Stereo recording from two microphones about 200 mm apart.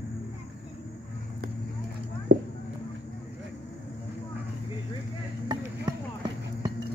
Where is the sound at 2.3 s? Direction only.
65° right (ahead or behind).